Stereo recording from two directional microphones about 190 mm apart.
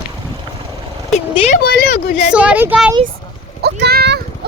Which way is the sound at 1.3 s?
30° left (ahead or behind).